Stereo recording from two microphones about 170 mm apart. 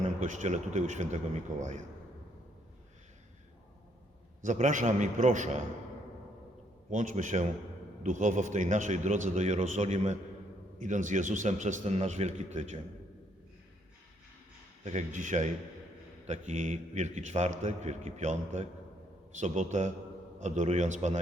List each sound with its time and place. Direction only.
0.2 s a man's voice: 45° right (ahead or behind)
4.4 s a man's voice: 45° right (ahead or behind)
6.9 s a man's voice: 45° right (ahead or behind)
14.8 s a man's voice: 45° right (ahead or behind)